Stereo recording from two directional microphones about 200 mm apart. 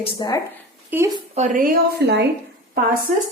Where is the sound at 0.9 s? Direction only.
10° right (ahead or behind).